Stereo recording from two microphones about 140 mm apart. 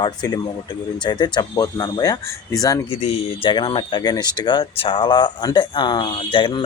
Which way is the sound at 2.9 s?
45° left (ahead or behind).